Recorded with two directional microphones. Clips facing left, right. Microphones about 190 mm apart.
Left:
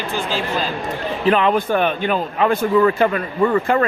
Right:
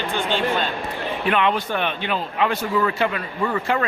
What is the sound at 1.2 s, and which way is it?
A man's voice, 35° left (ahead or behind).